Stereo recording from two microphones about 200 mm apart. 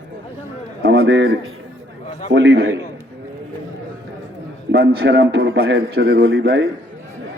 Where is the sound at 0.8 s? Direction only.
60° right (ahead or behind).